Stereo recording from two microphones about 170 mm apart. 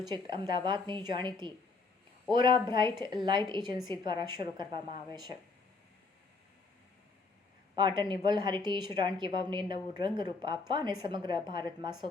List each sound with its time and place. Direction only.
0.1 s a woman's voice: 25° right (ahead or behind)
7.8 s a woman's voice: 25° right (ahead or behind)